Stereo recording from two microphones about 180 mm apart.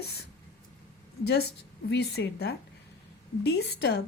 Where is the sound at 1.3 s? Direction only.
65° left (ahead or behind).